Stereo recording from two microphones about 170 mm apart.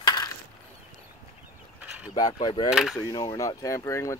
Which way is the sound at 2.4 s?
25° left (ahead or behind).